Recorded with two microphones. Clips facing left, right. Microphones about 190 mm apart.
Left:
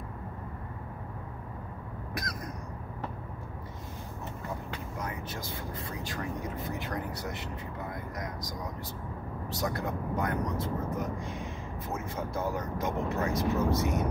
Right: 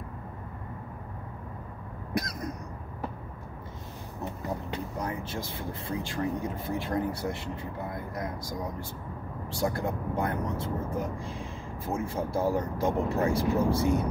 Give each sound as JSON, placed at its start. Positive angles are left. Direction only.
{"t": 4.5, "sound": "speech", "side_deg": -35}
{"t": 7.9, "sound": "vehicle", "side_deg": -30}
{"t": 9.6, "sound": "speech", "side_deg": -30}